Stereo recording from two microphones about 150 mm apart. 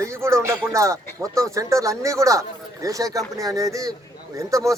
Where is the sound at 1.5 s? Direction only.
20° right (ahead or behind).